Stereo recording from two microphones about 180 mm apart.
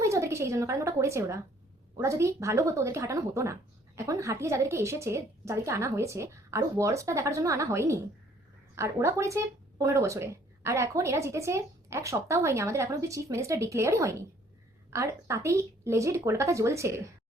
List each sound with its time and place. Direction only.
0.0 s a woman's voice: 15° right (ahead or behind)